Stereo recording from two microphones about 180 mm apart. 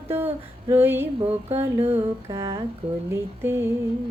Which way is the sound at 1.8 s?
35° right (ahead or behind).